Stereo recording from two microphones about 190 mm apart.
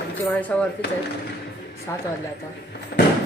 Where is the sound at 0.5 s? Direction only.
5° left (ahead or behind).